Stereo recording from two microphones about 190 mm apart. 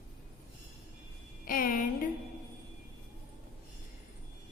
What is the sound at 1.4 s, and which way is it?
Speech, 45° left (ahead or behind).